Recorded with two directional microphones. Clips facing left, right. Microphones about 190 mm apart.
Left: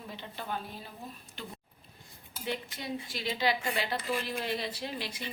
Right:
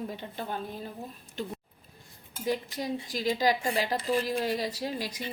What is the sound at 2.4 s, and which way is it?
A woman's voice, 40° right (ahead or behind).